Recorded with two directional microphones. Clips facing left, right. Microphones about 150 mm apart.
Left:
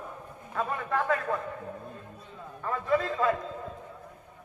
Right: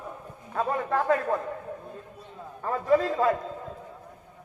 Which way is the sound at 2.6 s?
35° right (ahead or behind).